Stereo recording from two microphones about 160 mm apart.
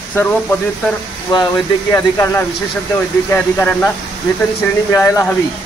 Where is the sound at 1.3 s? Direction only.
25° left (ahead or behind); by 3.9 s 10° left (ahead or behind).